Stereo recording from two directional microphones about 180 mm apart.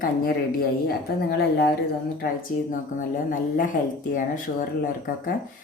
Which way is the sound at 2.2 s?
50° left (ahead or behind).